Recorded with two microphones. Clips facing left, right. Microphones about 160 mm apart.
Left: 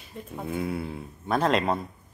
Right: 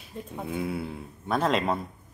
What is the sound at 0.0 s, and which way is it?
Speech, centre (ahead or behind).